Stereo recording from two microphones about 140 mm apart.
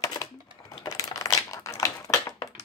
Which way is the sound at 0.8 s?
25° left (ahead or behind).